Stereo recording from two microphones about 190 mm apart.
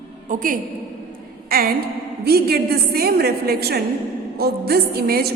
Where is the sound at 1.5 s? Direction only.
50° right (ahead or behind).